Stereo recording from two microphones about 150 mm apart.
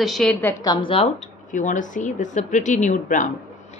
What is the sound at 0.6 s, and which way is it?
Speech, 30° left (ahead or behind).